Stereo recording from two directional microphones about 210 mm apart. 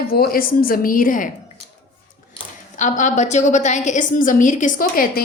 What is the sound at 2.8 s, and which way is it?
A woman's voice, 35° left (ahead or behind).